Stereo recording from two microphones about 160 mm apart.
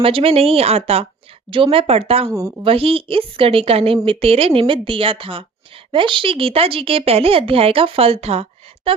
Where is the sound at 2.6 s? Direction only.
35° right (ahead or behind).